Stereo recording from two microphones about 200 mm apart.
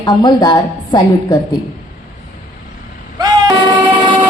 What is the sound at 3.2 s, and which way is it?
Vehicle, 20° right (ahead or behind).